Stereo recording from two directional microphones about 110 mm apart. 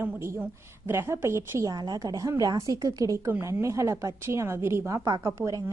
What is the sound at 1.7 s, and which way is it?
A woman's voice, 35° right (ahead or behind).